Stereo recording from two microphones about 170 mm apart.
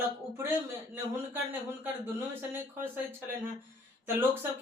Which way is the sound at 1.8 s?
15° right (ahead or behind).